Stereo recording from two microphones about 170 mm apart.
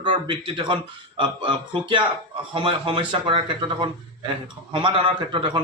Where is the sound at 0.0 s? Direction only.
30° right (ahead or behind).